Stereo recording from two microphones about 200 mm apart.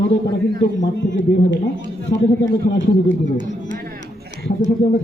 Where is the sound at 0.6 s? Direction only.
65° left (ahead or behind).